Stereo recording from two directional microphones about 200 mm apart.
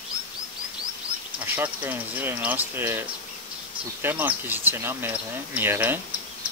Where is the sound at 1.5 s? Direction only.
10° right (ahead or behind).